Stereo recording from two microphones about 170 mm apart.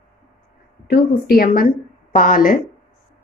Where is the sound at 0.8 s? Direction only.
65° left (ahead or behind).